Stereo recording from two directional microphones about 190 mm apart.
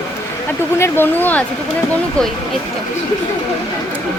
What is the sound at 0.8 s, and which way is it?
Speech, 10° left (ahead or behind).